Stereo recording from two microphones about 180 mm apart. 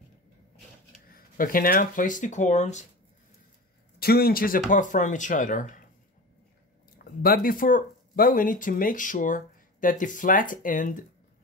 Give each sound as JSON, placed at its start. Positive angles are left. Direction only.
{"t": 1.0, "sound": "speech", "side_deg": 55}
{"t": 4.0, "sound": "speech", "side_deg": 55}
{"t": 7.2, "sound": "speech", "side_deg": 55}